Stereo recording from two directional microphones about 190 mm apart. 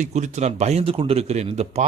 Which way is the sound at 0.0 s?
40° right (ahead or behind).